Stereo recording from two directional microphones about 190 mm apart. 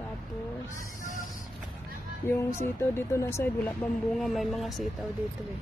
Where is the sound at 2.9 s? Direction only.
15° left (ahead or behind).